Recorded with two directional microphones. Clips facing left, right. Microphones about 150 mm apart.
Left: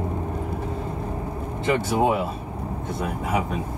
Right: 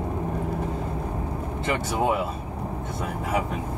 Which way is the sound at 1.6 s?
25° left (ahead or behind).